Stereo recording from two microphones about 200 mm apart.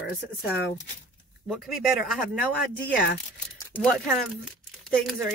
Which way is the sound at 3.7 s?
5° left (ahead or behind).